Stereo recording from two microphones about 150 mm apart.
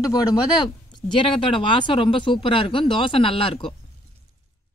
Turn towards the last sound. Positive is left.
turn(degrees=35)  # may be behind; listen again after turning